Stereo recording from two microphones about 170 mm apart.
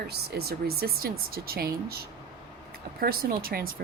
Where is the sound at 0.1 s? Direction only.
65° right (ahead or behind).